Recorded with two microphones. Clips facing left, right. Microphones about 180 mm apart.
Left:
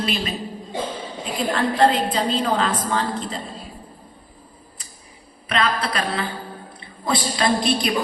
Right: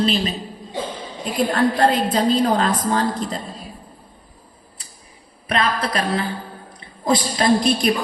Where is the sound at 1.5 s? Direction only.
45° right (ahead or behind).